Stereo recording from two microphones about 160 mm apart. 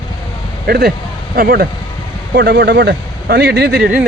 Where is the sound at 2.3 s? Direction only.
90° right.